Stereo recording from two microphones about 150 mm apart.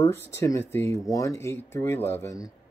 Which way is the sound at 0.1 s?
15° left (ahead or behind).